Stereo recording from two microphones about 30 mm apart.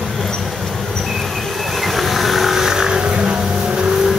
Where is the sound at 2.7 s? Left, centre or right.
Right.